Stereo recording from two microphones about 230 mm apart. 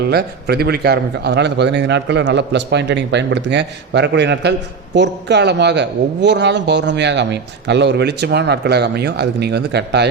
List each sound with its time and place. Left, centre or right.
0.0 s a man's voice: right